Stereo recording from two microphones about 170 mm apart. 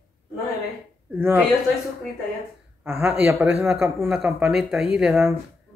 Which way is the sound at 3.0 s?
10° right (ahead or behind).